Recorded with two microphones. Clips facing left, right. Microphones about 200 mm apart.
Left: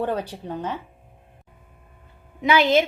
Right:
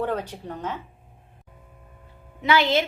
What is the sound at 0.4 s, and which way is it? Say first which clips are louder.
Speech: left 3 dB; 15° left (ahead or behind).